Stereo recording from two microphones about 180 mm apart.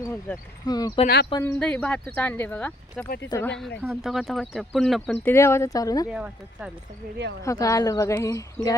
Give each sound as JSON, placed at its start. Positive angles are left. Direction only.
{"t": 0.0, "sound": "speech", "side_deg": 15}
{"t": 1.0, "sound": "speech", "side_deg": 65}
{"t": 1.5, "sound": "speech", "side_deg": 5}
{"t": 3.8, "sound": "speech", "side_deg": 0}
{"t": 5.1, "sound": "speech", "side_deg": 15}
{"t": 6.1, "sound": "speech", "side_deg": -5}
{"t": 7.4, "sound": "speech", "side_deg": 15}